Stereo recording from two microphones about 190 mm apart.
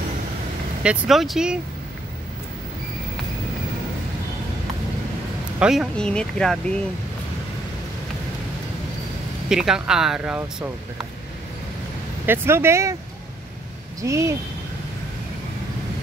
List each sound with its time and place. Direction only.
0.8 s speech: centre (ahead or behind)
5.6 s speech: centre (ahead or behind)
9.5 s speech: 5° right (ahead or behind)
12.3 s speech: 15° right (ahead or behind)
14.0 s speech: 15° right (ahead or behind)